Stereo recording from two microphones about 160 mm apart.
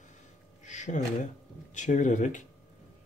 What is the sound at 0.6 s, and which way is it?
Speech, 50° left (ahead or behind).